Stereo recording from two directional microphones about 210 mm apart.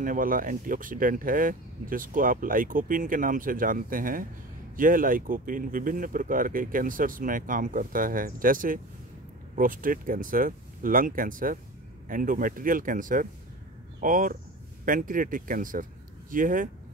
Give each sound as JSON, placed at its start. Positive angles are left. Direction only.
{"t": 0.0, "sound": "speech", "side_deg": -40}